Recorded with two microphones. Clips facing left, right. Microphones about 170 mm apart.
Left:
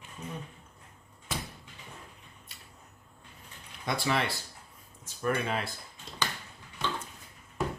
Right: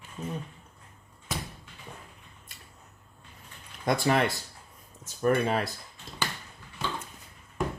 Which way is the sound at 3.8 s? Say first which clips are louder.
Right 5 dB; 50° right (ahead or behind).